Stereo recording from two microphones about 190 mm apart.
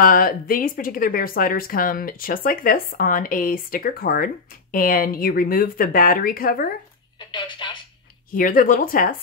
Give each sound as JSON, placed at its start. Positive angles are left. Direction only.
{"t": 0.0, "sound": "speech", "side_deg": 50}
{"t": 7.2, "sound": "a sound", "side_deg": 25}
{"t": 8.3, "sound": "speech", "side_deg": 45}